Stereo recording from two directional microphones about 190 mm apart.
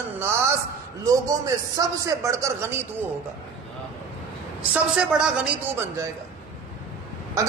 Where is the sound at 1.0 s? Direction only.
20° right (ahead or behind).